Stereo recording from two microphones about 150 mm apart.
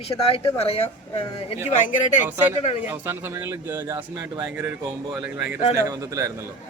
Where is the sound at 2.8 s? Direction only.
15° right (ahead or behind).